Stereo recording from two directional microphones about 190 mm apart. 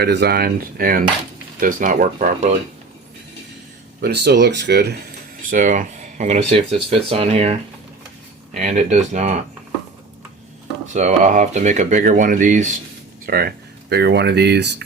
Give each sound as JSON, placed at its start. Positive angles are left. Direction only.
{"t": 0.0, "sound": "speech", "side_deg": -60}
{"t": 4.0, "sound": "speech", "side_deg": -60}
{"t": 5.5, "sound": "speech", "side_deg": -45}
{"t": 10.9, "sound": "speech", "side_deg": -40}
{"t": 13.2, "sound": "speech", "side_deg": -55}